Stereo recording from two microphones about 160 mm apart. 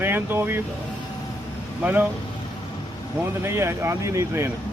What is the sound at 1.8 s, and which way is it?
Speech, 10° right (ahead or behind).